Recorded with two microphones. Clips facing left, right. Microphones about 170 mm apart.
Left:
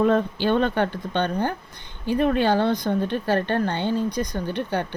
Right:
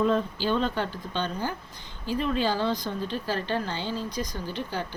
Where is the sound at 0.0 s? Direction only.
60° left (ahead or behind).